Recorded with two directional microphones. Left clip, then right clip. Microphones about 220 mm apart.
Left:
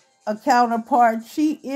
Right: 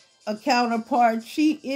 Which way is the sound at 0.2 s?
20° left (ahead or behind).